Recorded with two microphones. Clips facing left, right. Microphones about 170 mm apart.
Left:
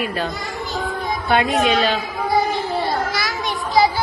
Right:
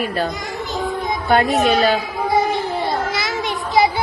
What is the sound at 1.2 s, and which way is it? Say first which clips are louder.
Speech: right 2 dB; 45° right (ahead or behind).